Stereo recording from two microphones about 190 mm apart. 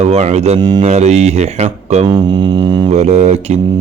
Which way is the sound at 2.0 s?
25° right (ahead or behind).